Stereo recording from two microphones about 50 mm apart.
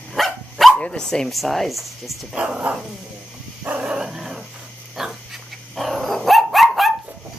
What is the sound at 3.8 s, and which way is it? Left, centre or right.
Dog, centre.